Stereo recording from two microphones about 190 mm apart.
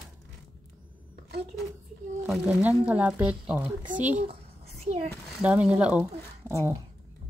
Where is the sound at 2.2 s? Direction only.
5° right (ahead or behind).